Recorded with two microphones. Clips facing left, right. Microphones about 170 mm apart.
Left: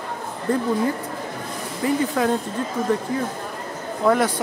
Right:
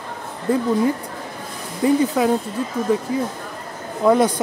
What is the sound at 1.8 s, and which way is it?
Speech, 15° right (ahead or behind).